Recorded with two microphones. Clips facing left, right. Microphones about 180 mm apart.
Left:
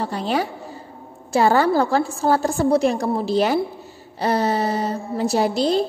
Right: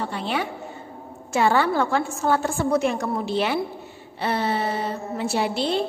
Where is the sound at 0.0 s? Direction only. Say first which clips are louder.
Left 4 dB; 40° left (ahead or behind).